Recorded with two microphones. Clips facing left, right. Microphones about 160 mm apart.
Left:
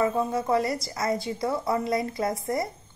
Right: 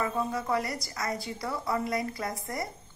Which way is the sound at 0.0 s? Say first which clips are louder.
Left 6 dB; 25° left (ahead or behind).